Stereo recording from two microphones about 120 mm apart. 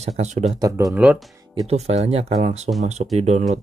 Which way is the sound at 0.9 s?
5° right (ahead or behind).